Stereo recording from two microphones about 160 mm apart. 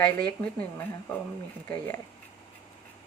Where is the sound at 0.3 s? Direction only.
10° left (ahead or behind).